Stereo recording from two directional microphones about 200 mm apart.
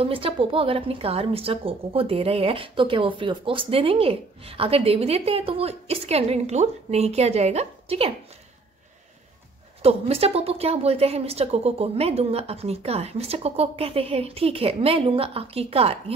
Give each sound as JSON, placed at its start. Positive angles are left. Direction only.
{"t": 0.0, "sound": "a woman's voice", "side_deg": -25}
{"t": 9.8, "sound": "a woman's voice", "side_deg": -30}